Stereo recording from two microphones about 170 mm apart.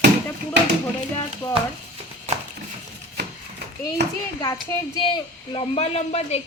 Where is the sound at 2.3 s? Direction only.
40° right (ahead or behind).